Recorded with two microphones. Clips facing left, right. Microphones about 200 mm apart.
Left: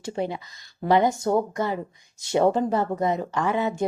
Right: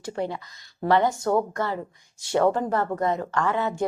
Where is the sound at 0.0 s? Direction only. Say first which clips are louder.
Left 1 dB; 20° left (ahead or behind).